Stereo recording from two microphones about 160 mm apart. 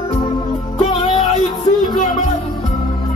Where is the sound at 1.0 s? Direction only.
25° left (ahead or behind).